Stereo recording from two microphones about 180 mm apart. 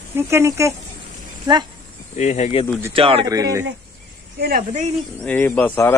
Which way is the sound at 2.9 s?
30° right (ahead or behind).